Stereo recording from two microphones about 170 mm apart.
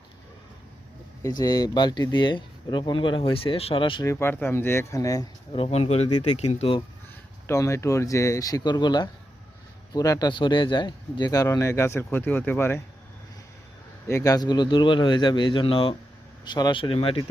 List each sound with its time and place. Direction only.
1.2 s speech: 20° left (ahead or behind)
4.0 s speech: 15° left (ahead or behind)
5.5 s speech: 35° left (ahead or behind)
7.4 s speech: 15° left (ahead or behind)
14.1 s speech: 20° left (ahead or behind)